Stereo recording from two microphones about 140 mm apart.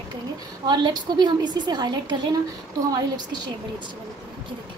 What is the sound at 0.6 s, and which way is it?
A woman's voice, 30° right (ahead or behind).